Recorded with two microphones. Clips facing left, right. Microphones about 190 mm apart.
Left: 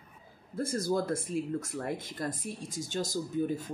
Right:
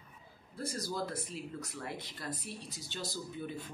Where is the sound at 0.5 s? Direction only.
50° left (ahead or behind).